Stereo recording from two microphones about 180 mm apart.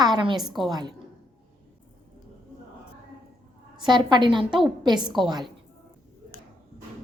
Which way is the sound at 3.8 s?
25° right (ahead or behind).